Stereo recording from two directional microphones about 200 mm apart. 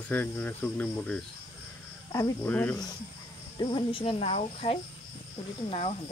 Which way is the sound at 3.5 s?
25° left (ahead or behind).